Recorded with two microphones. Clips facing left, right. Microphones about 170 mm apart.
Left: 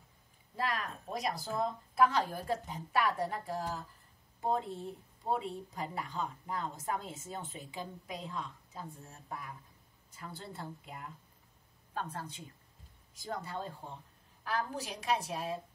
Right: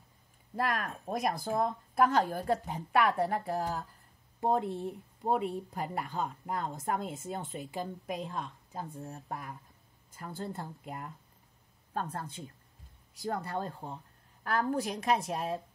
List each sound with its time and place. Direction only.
0.6 s speech: 50° right (ahead or behind)
13.2 s a woman's voice: 60° right (ahead or behind)